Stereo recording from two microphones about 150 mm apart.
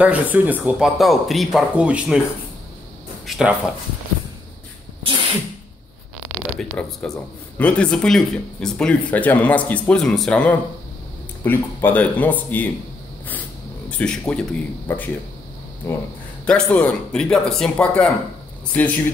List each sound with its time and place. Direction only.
0.0 s speech: 10° right (ahead or behind)
3.3 s speech: 5° right (ahead or behind)
6.1 s a sound: centre (ahead or behind)
7.0 s speech: 5° left (ahead or behind)
13.8 s speech: 10° left (ahead or behind)